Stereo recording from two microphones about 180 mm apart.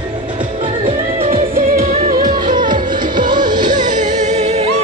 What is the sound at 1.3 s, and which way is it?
Music, 50° right (ahead or behind).